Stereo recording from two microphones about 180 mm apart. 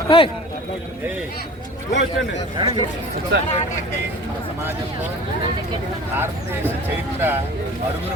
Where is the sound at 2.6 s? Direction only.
25° right (ahead or behind).